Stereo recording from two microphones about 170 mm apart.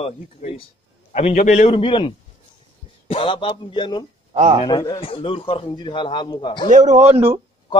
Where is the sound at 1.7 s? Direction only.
30° left (ahead or behind).